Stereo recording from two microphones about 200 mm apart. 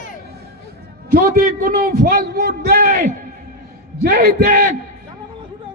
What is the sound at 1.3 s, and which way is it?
A man's voice, 45° right (ahead or behind).